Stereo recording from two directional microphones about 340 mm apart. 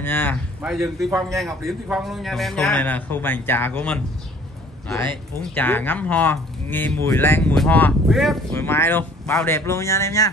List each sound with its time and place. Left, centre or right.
0.0 s a man's voice: centre
5.5 s speech: centre